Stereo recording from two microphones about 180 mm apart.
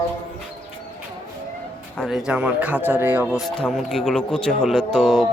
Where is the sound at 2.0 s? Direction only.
5° right (ahead or behind).